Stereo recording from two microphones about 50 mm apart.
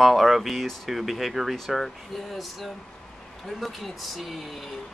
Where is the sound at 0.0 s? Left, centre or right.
Centre.